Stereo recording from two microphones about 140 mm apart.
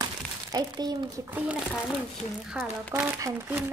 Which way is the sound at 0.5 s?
30° right (ahead or behind).